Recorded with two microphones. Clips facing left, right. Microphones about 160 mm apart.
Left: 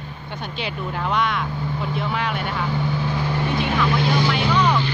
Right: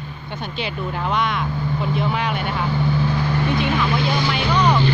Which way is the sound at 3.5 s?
35° left (ahead or behind).